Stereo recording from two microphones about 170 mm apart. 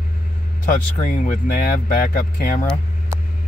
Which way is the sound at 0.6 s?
50° left (ahead or behind).